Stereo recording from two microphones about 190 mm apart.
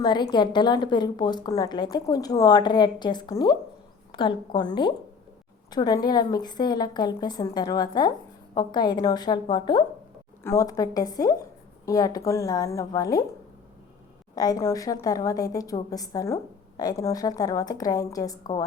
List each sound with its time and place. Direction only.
0.0 s a woman's voice: 25° left (ahead or behind)
14.3 s a woman's voice: 20° left (ahead or behind)